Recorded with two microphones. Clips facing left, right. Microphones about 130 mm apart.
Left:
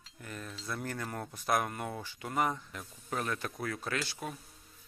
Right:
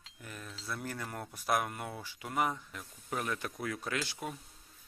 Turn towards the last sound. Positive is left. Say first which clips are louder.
# even
turn(degrees=-15)  # may be behind; listen again after turning